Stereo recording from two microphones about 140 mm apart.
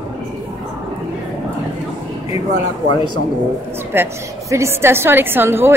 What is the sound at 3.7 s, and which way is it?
A woman's voice, 15° right (ahead or behind).